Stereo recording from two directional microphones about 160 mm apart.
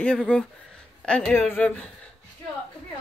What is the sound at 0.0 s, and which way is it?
Speech, 5° left (ahead or behind).